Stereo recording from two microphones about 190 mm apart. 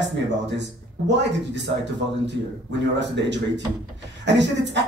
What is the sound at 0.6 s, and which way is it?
Speech, 65° right (ahead or behind).